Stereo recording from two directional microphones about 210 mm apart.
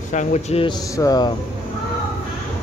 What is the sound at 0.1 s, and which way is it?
Speech, 35° left (ahead or behind).